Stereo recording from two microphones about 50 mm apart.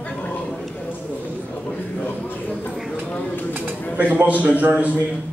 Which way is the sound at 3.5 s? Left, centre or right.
Right.